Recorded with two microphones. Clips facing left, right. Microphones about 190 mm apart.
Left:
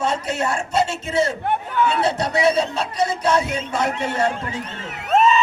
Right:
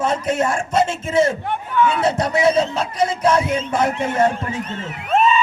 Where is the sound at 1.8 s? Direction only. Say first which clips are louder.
Right 3 dB; 30° left (ahead or behind).